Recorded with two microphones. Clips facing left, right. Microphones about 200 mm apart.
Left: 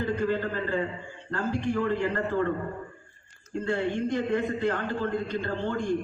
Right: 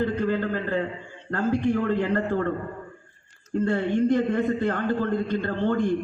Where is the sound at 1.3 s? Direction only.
55° right (ahead or behind).